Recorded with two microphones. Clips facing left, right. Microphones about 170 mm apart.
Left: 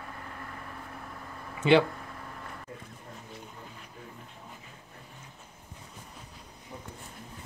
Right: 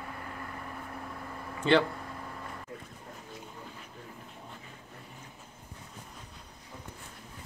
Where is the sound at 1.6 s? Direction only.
15° left (ahead or behind).